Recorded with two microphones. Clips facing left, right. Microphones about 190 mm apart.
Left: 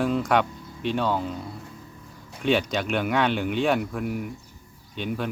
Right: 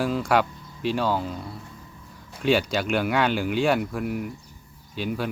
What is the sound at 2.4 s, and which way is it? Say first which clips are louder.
Speech: right 1 dB; centre (ahead or behind).